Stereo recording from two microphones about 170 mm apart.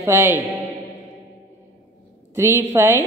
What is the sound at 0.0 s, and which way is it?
Speech, 15° right (ahead or behind).